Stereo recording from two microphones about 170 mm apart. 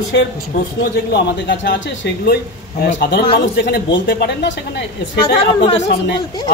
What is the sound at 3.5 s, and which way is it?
Speech, 90° left.